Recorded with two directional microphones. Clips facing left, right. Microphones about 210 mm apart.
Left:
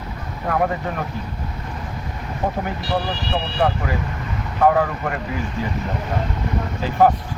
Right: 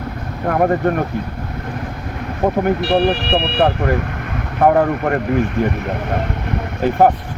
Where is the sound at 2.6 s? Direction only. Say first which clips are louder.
Right 9 dB; 65° right (ahead or behind).